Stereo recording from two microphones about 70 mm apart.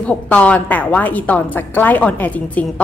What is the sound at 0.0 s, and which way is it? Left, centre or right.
A woman's voice, centre.